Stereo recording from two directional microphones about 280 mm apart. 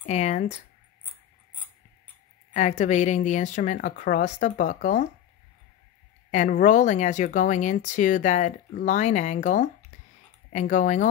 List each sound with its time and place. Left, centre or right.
0.0 s speech: left
2.8 s speech: left
6.3 s speech: left